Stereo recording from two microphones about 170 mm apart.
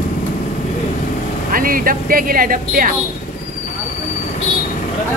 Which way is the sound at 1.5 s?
55° right (ahead or behind).